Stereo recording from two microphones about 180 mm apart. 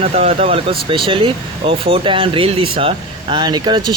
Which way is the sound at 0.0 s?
35° right (ahead or behind).